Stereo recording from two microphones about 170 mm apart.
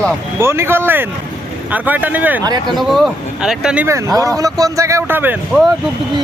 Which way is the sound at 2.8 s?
Centre (ahead or behind).